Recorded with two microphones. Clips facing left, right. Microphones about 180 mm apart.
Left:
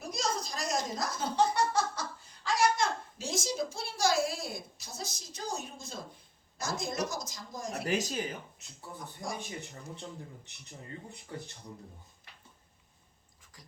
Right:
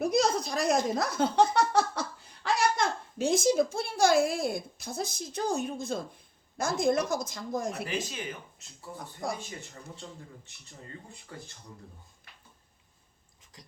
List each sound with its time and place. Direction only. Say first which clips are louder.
0.0 s a sound: right 9 dB; 60° right (ahead or behind)
6.6 s a woman's voice: right 8 dB; 55° right (ahead or behind)
7.9 s speech: left 3 dB; 40° left (ahead or behind)
9.2 s a woman's voice: right 5 dB; 60° right (ahead or behind)